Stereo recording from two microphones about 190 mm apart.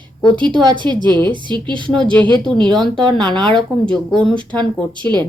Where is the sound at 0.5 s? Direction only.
25° right (ahead or behind).